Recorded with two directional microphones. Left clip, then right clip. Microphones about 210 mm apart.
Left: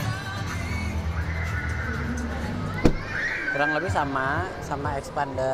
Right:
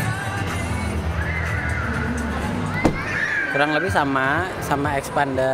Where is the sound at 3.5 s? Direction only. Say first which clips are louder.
Right 5 dB; 25° right (ahead or behind).